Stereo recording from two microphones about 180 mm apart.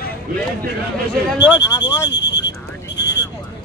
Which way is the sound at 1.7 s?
20° left (ahead or behind).